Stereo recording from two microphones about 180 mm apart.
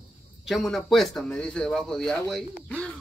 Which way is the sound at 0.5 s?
Centre (ahead or behind).